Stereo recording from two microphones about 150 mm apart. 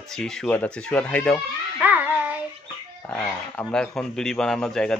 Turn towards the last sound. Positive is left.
turn(degrees=5)  # may be behind; listen again after turning